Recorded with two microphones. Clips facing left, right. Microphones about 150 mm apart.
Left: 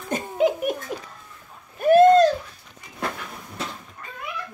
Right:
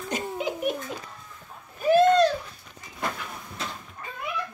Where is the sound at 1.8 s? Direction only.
50° left (ahead or behind).